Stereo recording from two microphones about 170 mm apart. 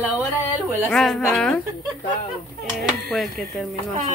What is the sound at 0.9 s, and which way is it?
Speech, centre (ahead or behind).